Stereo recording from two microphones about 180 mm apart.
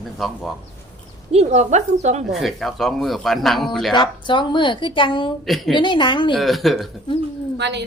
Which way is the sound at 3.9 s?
25° left (ahead or behind).